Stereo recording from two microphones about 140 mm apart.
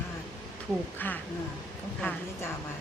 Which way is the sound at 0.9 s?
10° left (ahead or behind).